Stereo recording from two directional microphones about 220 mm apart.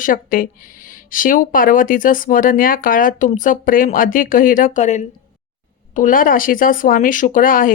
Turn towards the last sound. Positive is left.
turn(degrees=40)  # may be behind; listen again after turning